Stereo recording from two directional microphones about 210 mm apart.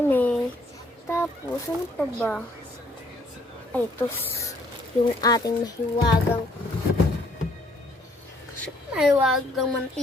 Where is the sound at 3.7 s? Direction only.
10° left (ahead or behind).